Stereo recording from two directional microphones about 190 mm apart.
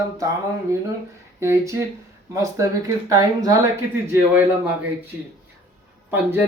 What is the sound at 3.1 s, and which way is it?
Speech, 20° right (ahead or behind).